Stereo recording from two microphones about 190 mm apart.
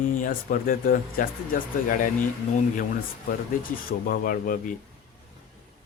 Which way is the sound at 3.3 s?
50° left (ahead or behind).